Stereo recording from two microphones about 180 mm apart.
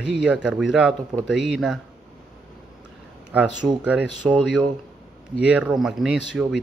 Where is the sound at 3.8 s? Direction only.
5° right (ahead or behind).